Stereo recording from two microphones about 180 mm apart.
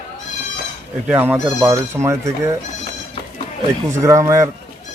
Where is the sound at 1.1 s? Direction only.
10° right (ahead or behind).